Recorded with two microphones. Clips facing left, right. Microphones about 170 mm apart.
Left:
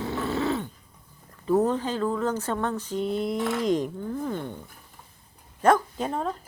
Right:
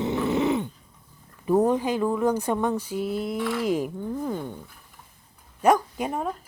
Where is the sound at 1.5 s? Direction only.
15° right (ahead or behind).